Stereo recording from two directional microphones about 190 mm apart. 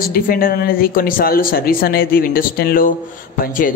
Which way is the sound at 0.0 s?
50° left (ahead or behind).